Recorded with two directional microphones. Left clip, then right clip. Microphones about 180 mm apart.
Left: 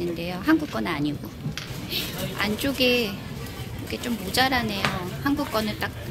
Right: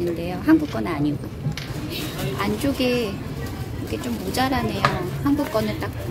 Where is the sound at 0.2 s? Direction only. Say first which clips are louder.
Right 4 dB; centre (ahead or behind).